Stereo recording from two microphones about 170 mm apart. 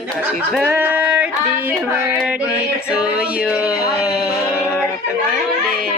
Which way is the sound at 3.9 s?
5° right (ahead or behind).